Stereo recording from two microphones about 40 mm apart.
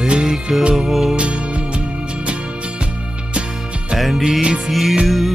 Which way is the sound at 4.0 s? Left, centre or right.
Centre.